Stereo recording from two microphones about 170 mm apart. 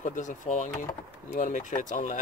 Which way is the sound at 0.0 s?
45° left (ahead or behind).